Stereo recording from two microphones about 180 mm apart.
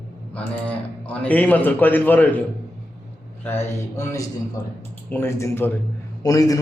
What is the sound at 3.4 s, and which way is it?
A man's voice, 15° left (ahead or behind).